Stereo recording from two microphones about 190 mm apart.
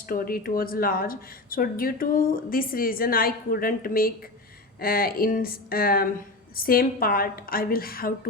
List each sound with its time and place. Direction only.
0.1 s a woman's voice: 50° left (ahead or behind)